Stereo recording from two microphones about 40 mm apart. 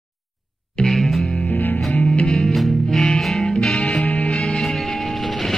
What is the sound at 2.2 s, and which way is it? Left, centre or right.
Music, centre.